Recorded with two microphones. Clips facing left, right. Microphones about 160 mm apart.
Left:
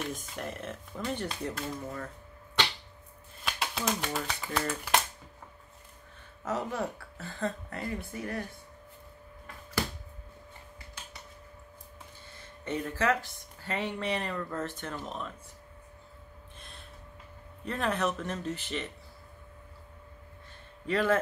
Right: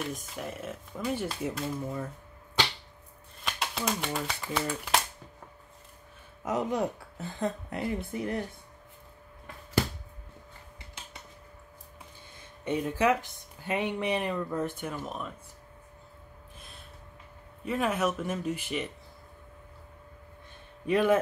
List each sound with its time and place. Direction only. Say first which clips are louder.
0.0 s speech: right 1 dB; centre (ahead or behind)
3.4 s speech: even; centre (ahead or behind)
6.4 s speech: right 4 dB; 15° right (ahead or behind)
12.4 s speech: right 4 dB; 15° right (ahead or behind)
16.5 s gasp: even; centre (ahead or behind)
17.6 s speech: right 2 dB; 10° right (ahead or behind)
20.8 s speech: right 3 dB; 15° right (ahead or behind)